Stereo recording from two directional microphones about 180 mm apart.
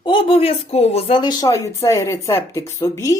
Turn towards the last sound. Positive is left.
turn(degrees=15)  # may be behind; listen again after turning